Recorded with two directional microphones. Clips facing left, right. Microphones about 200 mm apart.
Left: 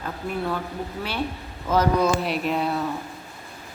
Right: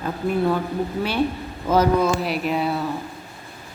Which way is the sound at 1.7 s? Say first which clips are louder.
Right 2 dB; 5° right (ahead or behind).